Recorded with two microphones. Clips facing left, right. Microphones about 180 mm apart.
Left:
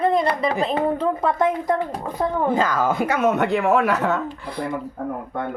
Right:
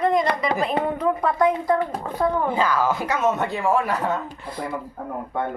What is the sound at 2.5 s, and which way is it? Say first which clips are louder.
Speech: left 1 dB; 45° left (ahead or behind).